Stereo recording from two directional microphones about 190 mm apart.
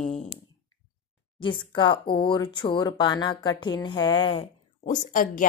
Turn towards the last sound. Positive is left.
turn(degrees=45)  # may be behind; listen again after turning